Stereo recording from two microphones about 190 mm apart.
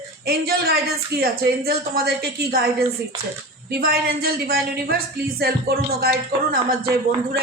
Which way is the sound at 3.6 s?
55° right (ahead or behind).